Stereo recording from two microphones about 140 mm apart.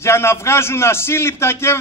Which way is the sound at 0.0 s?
20° left (ahead or behind).